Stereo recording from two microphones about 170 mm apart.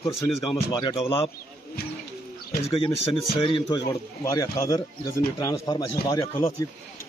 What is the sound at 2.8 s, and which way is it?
Speech, 30° left (ahead or behind).